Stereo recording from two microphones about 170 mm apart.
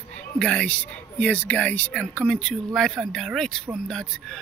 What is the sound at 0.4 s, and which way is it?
Speech, 5° left (ahead or behind).